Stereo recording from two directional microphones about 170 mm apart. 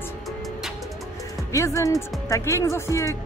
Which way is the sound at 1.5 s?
20° left (ahead or behind).